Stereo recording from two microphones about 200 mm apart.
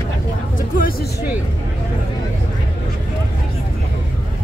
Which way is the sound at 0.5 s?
45° left (ahead or behind).